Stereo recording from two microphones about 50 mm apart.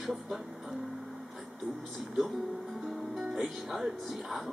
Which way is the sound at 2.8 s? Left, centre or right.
Centre.